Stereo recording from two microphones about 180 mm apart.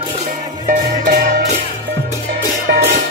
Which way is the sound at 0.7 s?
55° right (ahead or behind).